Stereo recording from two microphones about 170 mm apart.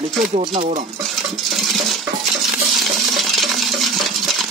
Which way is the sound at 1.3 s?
Centre (ahead or behind).